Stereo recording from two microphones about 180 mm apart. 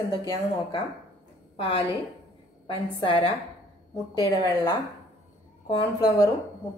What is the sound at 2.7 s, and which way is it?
A woman's voice, 25° left (ahead or behind).